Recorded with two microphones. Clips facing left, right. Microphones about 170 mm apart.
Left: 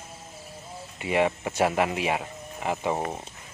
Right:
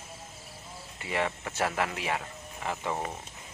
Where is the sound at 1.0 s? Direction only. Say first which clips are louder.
Left 7 dB; 20° left (ahead or behind).